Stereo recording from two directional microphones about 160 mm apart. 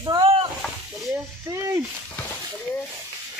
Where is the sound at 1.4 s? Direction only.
20° right (ahead or behind).